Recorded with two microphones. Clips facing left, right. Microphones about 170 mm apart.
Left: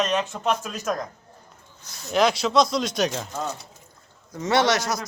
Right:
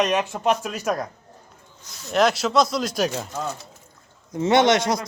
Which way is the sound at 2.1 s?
Centre (ahead or behind).